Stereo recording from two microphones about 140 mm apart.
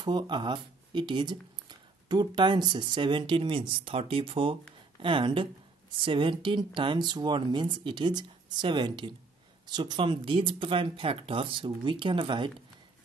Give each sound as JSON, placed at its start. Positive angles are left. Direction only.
{"t": 0.0, "sound": "speech", "side_deg": -35}